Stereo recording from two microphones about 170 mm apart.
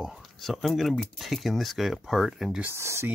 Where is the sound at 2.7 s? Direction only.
15° right (ahead or behind).